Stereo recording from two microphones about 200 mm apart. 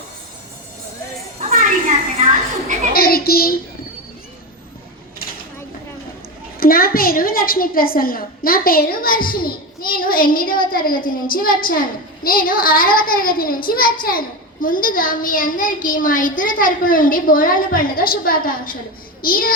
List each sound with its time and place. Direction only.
1.4 s a sound: 35° right (ahead or behind)
2.9 s a woman's voice: 50° left (ahead or behind)
6.6 s a woman's voice: 45° left (ahead or behind)